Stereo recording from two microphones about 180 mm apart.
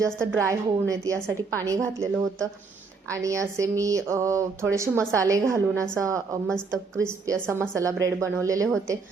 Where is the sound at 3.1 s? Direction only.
15° right (ahead or behind).